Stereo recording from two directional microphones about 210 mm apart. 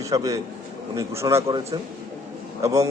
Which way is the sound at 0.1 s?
15° right (ahead or behind).